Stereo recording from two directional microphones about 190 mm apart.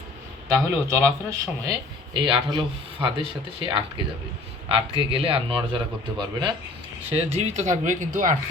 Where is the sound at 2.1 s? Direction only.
25° right (ahead or behind).